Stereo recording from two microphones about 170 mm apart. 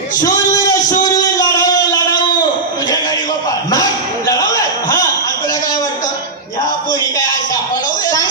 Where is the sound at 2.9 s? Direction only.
25° left (ahead or behind).